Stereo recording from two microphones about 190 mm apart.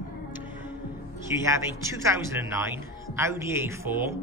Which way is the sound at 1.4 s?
15° right (ahead or behind).